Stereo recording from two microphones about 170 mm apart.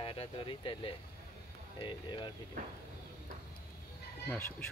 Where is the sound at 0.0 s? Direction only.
30° left (ahead or behind).